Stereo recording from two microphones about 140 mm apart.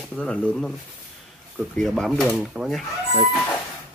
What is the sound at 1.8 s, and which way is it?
Speech, centre (ahead or behind).